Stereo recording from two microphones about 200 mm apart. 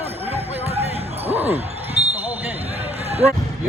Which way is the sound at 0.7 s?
30° right (ahead or behind).